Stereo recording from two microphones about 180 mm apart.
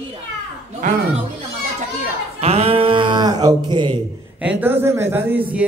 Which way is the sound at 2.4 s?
35° right (ahead or behind).